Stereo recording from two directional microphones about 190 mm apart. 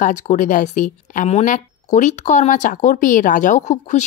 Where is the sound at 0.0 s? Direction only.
40° left (ahead or behind).